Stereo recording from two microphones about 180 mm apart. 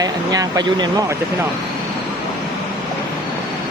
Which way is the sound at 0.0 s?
20° right (ahead or behind).